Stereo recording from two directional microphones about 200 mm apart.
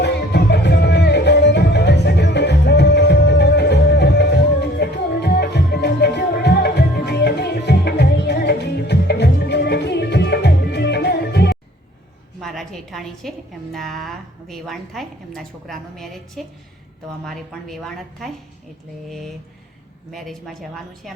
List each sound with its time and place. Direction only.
0.0 s music: 55° left (ahead or behind)
12.4 s a sound: centre (ahead or behind)
13.7 s a woman's voice: centre (ahead or behind)
20.1 s a woman's voice: centre (ahead or behind)